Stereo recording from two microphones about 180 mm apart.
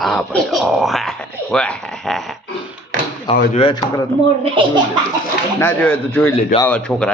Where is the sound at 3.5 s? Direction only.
30° left (ahead or behind).